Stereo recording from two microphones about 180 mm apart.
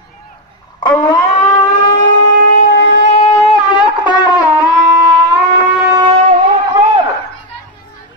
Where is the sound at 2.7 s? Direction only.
80° left.